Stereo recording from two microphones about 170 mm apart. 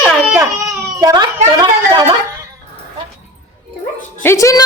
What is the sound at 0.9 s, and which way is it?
Speech, 25° right (ahead or behind).